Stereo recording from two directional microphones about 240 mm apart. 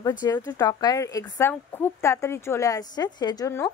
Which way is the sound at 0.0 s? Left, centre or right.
Centre.